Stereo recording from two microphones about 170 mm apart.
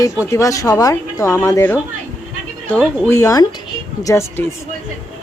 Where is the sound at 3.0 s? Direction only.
15° left (ahead or behind).